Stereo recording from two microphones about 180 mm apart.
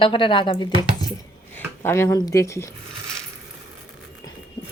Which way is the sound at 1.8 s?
15° left (ahead or behind).